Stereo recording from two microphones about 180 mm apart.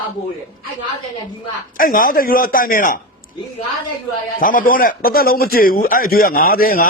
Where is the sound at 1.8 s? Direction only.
50° left (ahead or behind).